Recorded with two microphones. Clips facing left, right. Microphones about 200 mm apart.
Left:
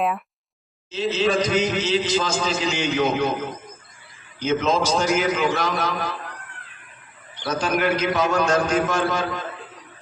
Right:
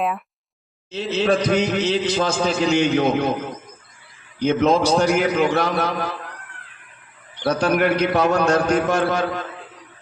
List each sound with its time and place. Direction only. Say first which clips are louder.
0.9 s a man's voice: right 2 dB; 60° right (ahead or behind)
4.4 s a man's voice: right 4 dB; 60° right (ahead or behind)
7.4 s a man's voice: right 4 dB; 60° right (ahead or behind)